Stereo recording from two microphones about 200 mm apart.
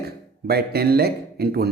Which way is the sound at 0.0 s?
50° right (ahead or behind).